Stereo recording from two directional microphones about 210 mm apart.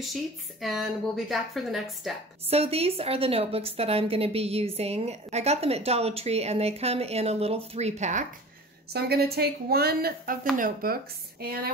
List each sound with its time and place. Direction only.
0.0 s a woman's voice: centre (ahead or behind)
2.5 s a woman's voice: 30° right (ahead or behind)
8.9 s a woman's voice: 50° right (ahead or behind)